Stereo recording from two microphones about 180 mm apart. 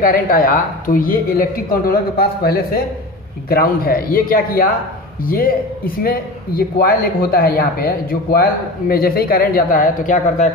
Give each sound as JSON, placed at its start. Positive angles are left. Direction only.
{"t": 0.0, "sound": "speech", "side_deg": 55}